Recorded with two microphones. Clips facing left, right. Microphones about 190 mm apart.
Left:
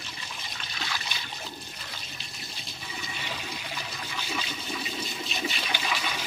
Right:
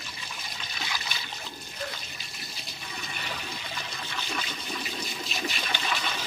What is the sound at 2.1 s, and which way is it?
Toilet flush, centre (ahead or behind).